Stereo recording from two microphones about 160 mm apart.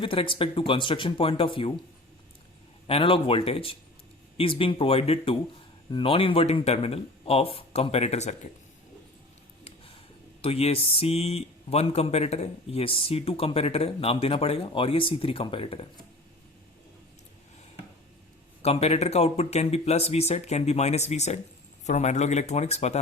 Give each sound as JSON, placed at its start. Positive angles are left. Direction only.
{"t": 0.0, "sound": "speech", "side_deg": 35}
{"t": 2.8, "sound": "speech", "side_deg": 35}
{"t": 10.4, "sound": "speech", "side_deg": 40}
{"t": 18.6, "sound": "speech", "side_deg": 40}